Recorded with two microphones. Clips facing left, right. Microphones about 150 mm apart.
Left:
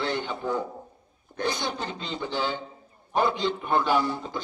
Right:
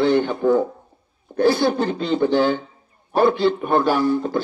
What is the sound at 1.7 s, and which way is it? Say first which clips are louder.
A man's voice: right 12 dB; 55° right (ahead or behind).